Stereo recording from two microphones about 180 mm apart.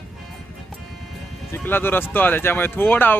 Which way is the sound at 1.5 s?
10° left (ahead or behind).